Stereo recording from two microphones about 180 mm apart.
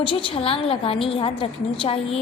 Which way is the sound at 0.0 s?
30° left (ahead or behind).